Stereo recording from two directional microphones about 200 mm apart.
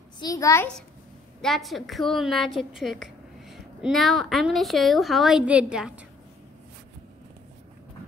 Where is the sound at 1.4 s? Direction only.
Centre (ahead or behind).